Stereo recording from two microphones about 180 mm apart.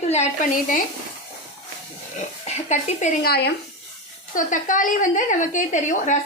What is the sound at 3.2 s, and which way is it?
Speech, 60° left (ahead or behind).